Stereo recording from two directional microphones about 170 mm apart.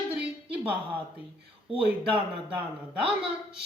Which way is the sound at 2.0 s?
10° right (ahead or behind).